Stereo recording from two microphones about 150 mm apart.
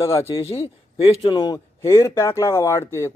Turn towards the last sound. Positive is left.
turn(degrees=20)  # may be behind; listen again after turning